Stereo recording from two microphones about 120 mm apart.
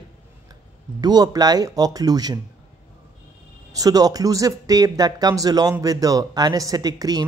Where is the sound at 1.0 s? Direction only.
35° right (ahead or behind).